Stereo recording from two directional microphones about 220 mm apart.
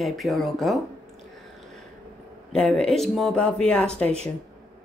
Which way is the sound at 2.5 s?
5° left (ahead or behind).